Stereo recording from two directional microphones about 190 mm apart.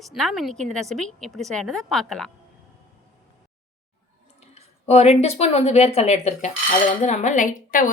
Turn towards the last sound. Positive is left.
turn(degrees=45)  # may be behind; listen again after turning